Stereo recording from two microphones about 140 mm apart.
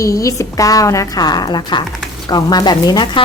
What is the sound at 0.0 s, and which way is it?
Speech, 20° left (ahead or behind).